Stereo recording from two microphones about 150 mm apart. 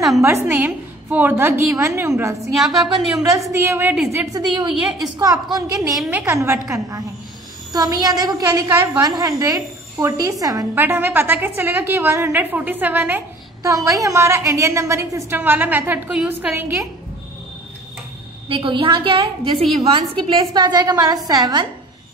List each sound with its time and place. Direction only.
0.2 s a woman's voice: 20° right (ahead or behind)
2.5 s a woman's voice: centre (ahead or behind)
3.2 s a woman's voice: 20° right (ahead or behind)
4.3 s a woman's voice: 25° right (ahead or behind)
6.0 s a woman's voice: 15° right (ahead or behind)
13.6 s a woman's voice: 20° right (ahead or behind)
18.5 s a woman's voice: 35° right (ahead or behind)